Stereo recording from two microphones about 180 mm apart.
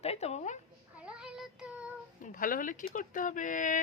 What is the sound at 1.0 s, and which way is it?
Child singing, 5° right (ahead or behind).